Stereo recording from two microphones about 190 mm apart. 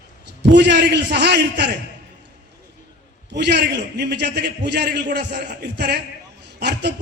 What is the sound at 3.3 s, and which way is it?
A man's voice, 65° right (ahead or behind).